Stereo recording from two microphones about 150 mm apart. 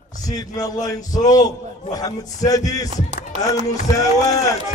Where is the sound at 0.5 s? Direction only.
25° left (ahead or behind).